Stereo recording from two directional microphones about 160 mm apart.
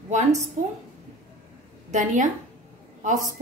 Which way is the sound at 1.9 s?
50° right (ahead or behind).